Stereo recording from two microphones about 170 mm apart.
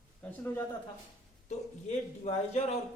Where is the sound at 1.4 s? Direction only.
40° left (ahead or behind).